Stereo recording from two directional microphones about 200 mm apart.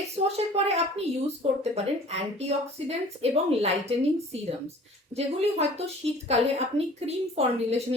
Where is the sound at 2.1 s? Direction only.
30° right (ahead or behind).